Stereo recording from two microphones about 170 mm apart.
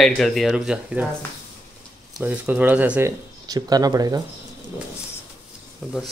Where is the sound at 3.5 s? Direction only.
20° right (ahead or behind).